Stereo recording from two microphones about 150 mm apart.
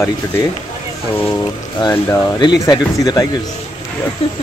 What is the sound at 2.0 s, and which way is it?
Speech, 15° left (ahead or behind).